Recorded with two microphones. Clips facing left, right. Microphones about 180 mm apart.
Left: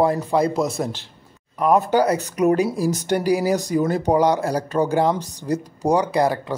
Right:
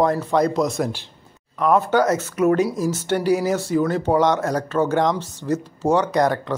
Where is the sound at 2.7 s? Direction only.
35° left (ahead or behind).